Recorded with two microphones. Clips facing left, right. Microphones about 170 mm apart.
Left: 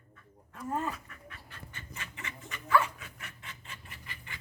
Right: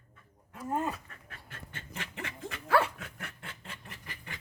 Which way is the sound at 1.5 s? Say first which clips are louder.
Right 6 dB; 65° right (ahead or behind).